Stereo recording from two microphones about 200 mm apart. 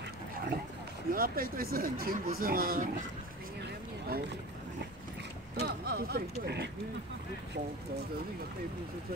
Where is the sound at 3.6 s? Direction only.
50° right (ahead or behind).